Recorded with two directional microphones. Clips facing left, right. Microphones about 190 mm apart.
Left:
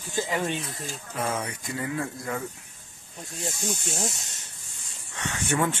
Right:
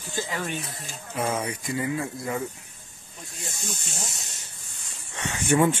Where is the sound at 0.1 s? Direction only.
20° left (ahead or behind).